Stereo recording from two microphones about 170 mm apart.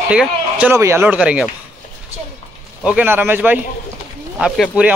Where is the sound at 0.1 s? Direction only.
5° right (ahead or behind).